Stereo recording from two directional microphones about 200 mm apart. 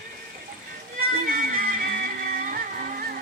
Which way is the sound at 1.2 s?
45° right (ahead or behind).